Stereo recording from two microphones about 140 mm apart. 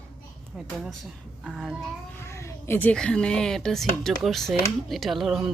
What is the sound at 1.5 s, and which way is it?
Speech, centre (ahead or behind).